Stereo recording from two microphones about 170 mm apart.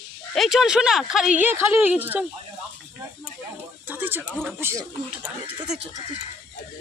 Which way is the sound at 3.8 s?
10° right (ahead or behind).